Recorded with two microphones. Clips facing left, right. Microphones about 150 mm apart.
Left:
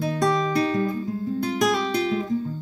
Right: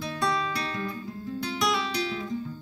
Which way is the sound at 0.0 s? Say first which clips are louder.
Left 7 dB; 40° left (ahead or behind).